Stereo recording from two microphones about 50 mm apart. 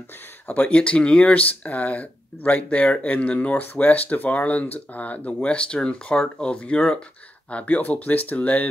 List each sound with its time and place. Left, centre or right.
0.5 s speech: left